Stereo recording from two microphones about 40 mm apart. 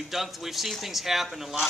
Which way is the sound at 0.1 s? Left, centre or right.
Centre.